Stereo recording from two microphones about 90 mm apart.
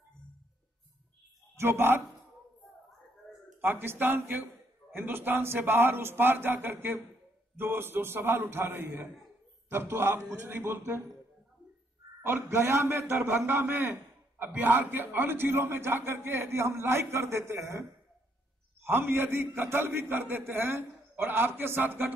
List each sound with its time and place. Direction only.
1.6 s a man's voice: 25° right (ahead or behind)
3.6 s a man's voice: 25° right (ahead or behind)
12.2 s a man's voice: 25° right (ahead or behind)